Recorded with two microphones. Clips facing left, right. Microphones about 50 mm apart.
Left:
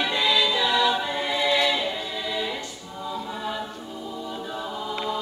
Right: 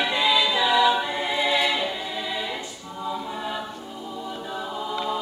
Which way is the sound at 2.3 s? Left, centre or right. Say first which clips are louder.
Left 1 dB; centre.